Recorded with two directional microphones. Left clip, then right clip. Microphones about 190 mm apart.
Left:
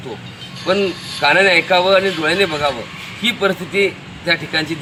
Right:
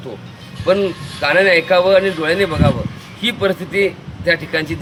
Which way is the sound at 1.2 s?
30° right (ahead or behind).